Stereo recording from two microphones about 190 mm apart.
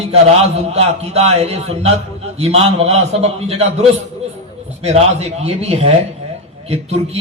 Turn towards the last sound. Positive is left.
turn(degrees=-35)  # may be behind; listen again after turning